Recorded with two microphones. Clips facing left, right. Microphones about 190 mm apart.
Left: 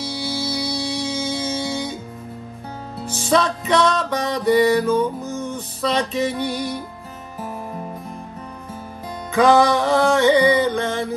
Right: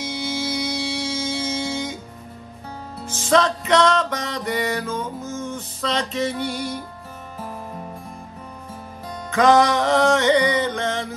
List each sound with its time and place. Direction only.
0.3 s music: 15° right (ahead or behind)
0.8 s music: 15° left (ahead or behind)
3.1 s music: 15° left (ahead or behind)
9.3 s music: 10° left (ahead or behind)